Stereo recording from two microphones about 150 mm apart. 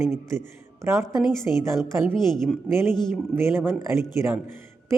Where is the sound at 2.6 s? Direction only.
15° right (ahead or behind).